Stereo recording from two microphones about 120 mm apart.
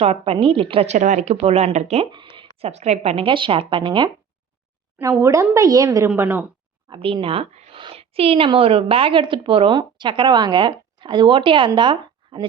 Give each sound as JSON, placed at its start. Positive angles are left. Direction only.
{"t": 0.0, "sound": "a woman's voice", "side_deg": -55}
{"t": 0.9, "sound": "speech", "side_deg": -90}
{"t": 2.0, "sound": "a sound", "side_deg": -40}
{"t": 2.6, "sound": "a woman's voice", "side_deg": -60}
{"t": 4.9, "sound": "a woman's voice", "side_deg": -25}
{"t": 6.1, "sound": "a woman's voice", "side_deg": -20}
{"t": 6.9, "sound": "a woman's voice", "side_deg": -45}